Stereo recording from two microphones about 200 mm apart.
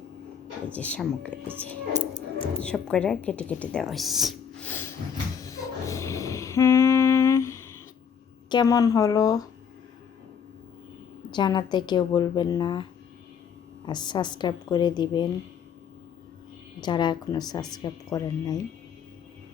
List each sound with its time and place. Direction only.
0.7 s a woman's voice: 5° left (ahead or behind)
5.4 s humming: 15° left (ahead or behind)
8.4 s a woman's voice: 20° left (ahead or behind)
11.3 s speech: 20° left (ahead or behind)
16.8 s speech: 20° left (ahead or behind)